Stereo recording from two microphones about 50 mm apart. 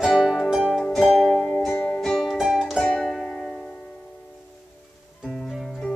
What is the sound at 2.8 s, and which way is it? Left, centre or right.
Music, centre.